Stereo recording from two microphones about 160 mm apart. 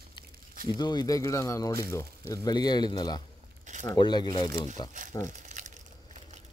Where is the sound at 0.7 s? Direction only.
25° left (ahead or behind).